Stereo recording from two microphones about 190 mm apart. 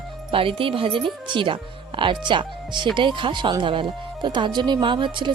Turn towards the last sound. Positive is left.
turn(degrees=-25)  # may be behind; listen again after turning